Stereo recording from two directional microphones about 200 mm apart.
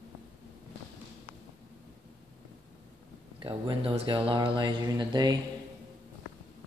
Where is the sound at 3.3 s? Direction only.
25° right (ahead or behind).